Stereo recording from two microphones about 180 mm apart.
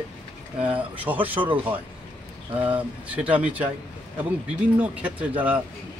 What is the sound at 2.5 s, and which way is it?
A man's voice, 10° right (ahead or behind).